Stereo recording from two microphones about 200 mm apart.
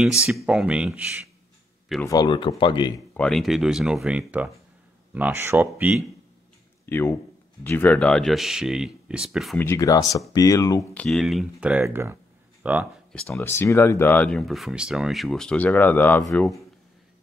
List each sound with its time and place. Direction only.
0.3 s speech: 5° right (ahead or behind)
2.0 s speech: 20° left (ahead or behind)
3.2 s speech: centre (ahead or behind)
6.9 s speech: 10° left (ahead or behind)
9.6 s speech: 15° left (ahead or behind); by 12.8 s 10° right (ahead or behind)
13.1 s speech: 10° left (ahead or behind)